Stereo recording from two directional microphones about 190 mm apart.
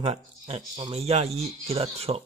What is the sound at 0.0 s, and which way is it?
Speech, 35° right (ahead or behind).